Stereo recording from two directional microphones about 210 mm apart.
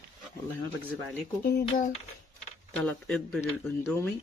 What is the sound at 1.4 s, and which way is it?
Speech, 40° left (ahead or behind).